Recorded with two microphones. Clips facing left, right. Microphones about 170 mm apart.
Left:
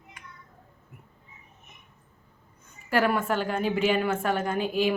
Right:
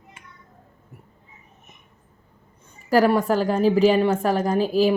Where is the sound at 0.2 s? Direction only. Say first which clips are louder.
Even; 25° right (ahead or behind).